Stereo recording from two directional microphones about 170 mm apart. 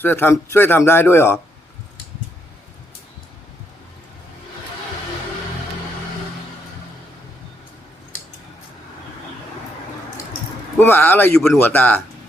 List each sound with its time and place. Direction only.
0.0 s speech: 10° left (ahead or behind)
10.8 s speech: 10° left (ahead or behind)